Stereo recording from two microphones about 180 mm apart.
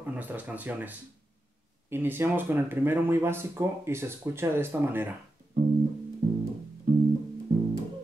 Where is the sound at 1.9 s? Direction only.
10° right (ahead or behind).